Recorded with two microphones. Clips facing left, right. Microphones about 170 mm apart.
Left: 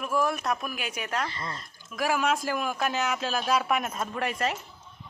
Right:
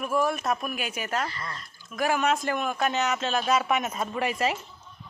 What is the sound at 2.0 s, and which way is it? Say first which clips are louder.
A man's voice: right 1 dB; centre (ahead or behind).